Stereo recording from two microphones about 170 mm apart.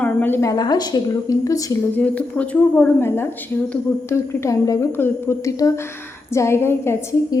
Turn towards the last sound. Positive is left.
turn(degrees=15)  # may be behind; listen again after turning